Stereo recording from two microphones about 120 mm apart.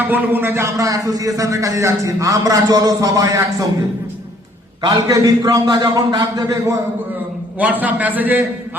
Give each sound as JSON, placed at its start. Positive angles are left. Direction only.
{"t": 0.0, "sound": "a man's voice", "side_deg": -15}
{"t": 4.9, "sound": "a man's voice", "side_deg": -30}
{"t": 7.6, "sound": "a man's voice", "side_deg": -15}